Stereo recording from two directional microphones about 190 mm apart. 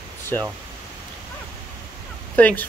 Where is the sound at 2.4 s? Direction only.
10° left (ahead or behind).